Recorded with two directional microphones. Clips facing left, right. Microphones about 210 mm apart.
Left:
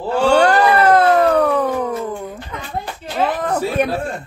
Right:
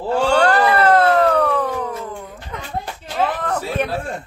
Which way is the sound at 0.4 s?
15° left (ahead or behind).